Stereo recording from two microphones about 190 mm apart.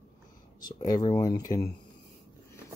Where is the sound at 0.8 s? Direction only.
20° left (ahead or behind).